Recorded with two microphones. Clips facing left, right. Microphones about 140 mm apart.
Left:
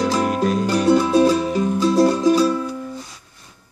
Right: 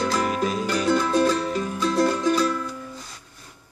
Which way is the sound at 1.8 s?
30° left (ahead or behind).